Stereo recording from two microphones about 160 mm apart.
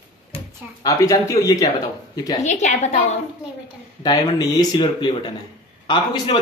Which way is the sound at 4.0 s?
25° left (ahead or behind).